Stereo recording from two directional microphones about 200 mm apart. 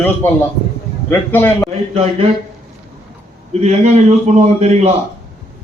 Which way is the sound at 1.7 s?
30° right (ahead or behind).